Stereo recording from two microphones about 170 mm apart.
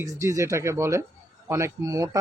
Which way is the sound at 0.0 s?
20° right (ahead or behind).